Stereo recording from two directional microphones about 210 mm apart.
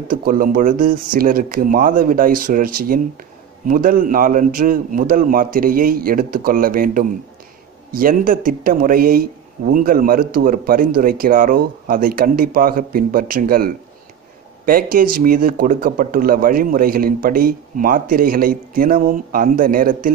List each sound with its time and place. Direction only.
0.1 s a man's voice: 40° right (ahead or behind)